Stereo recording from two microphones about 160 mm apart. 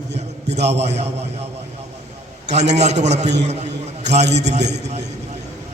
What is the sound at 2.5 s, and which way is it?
A man's voice, 45° right (ahead or behind).